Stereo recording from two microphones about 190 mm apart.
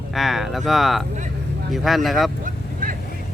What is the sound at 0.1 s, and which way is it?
Speech, centre (ahead or behind).